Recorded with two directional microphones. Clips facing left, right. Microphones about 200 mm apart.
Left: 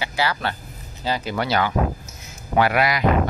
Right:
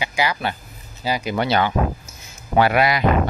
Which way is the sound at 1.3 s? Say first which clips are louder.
Right 2 dB; 25° right (ahead or behind).